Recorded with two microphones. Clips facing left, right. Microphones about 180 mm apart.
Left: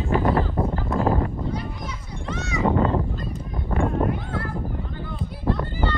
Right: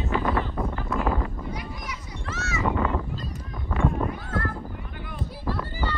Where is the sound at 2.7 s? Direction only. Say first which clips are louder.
Left 6 dB; 30° left (ahead or behind).